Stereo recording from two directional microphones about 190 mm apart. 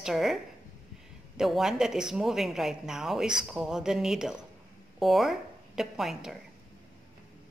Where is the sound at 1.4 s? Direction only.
Centre (ahead or behind).